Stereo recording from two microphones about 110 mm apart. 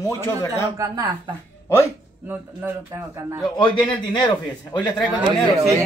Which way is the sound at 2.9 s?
30° right (ahead or behind).